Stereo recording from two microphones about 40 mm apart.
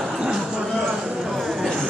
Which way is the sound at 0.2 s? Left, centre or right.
Centre.